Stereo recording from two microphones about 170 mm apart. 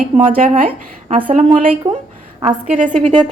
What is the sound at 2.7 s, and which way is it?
Speech, 45° right (ahead or behind).